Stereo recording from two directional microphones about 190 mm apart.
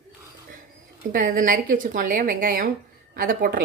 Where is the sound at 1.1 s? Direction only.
45° right (ahead or behind).